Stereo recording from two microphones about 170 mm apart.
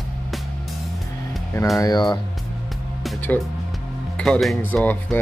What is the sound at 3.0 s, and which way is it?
Music, 10° left (ahead or behind).